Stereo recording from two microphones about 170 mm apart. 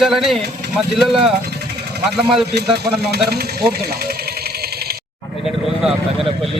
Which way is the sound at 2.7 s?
70° right (ahead or behind).